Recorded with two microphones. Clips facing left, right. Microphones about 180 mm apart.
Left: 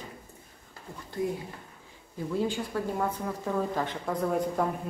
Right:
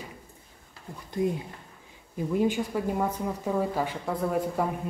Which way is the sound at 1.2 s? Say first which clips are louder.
Right 3 dB; 25° right (ahead or behind).